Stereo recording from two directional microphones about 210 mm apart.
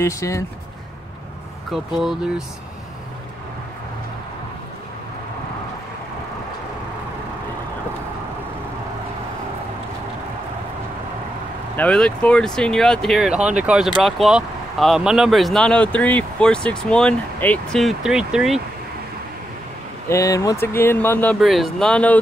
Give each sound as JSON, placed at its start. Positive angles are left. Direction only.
{"t": 0.0, "sound": "speech", "side_deg": 15}
{"t": 1.7, "sound": "speech", "side_deg": 0}
{"t": 11.7, "sound": "speech", "side_deg": 5}
{"t": 20.1, "sound": "speech", "side_deg": 15}